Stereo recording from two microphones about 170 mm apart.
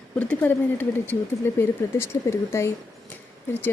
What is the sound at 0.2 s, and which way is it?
Speech, 10° left (ahead or behind).